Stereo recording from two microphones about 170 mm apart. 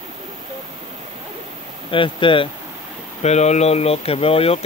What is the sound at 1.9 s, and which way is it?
Speech, 30° left (ahead or behind).